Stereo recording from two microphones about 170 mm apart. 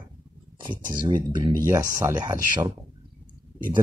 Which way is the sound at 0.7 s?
25° right (ahead or behind).